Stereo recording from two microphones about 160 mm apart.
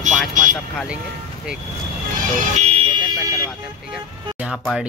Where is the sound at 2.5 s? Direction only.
40° right (ahead or behind).